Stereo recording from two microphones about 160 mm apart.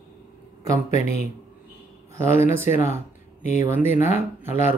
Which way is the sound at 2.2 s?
45° left (ahead or behind).